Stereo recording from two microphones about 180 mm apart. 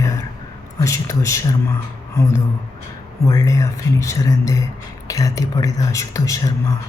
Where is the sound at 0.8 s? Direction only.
15° left (ahead or behind).